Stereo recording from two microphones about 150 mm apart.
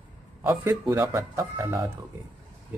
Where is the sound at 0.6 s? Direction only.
15° right (ahead or behind).